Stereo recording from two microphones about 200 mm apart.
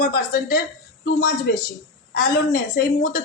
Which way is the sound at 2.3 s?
55° left (ahead or behind).